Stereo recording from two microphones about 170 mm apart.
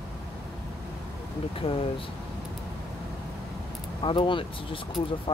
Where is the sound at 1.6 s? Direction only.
30° left (ahead or behind).